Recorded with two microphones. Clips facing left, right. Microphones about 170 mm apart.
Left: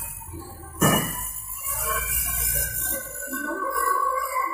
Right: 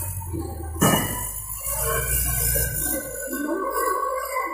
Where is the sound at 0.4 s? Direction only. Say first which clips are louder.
Right 2 dB; 40° right (ahead or behind).